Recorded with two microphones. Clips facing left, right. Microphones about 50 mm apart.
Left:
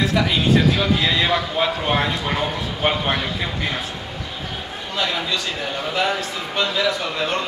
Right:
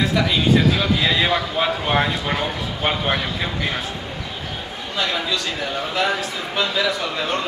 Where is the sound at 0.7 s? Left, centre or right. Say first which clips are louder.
Even; centre.